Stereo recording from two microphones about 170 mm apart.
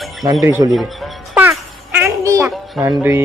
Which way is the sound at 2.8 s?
20° right (ahead or behind).